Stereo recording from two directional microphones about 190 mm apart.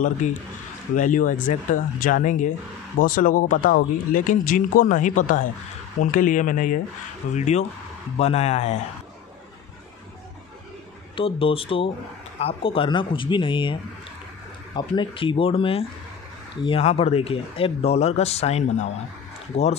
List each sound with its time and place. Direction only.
0.2 s speech: 40° left (ahead or behind)
11.1 s speech: 30° left (ahead or behind)
14.8 s speech: 25° left (ahead or behind)